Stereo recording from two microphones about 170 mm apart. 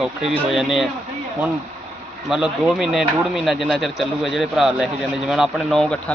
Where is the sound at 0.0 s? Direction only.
5° right (ahead or behind).